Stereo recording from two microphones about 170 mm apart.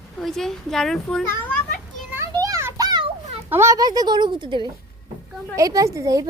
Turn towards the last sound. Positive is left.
turn(degrees=-20)  # may be behind; listen again after turning